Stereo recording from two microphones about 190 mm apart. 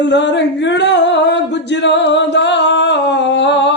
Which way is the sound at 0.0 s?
65° left (ahead or behind).